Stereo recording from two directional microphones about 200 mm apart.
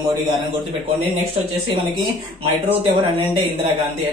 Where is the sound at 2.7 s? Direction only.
25° right (ahead or behind).